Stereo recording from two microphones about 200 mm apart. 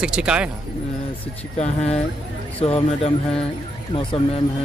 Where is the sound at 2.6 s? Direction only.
30° left (ahead or behind).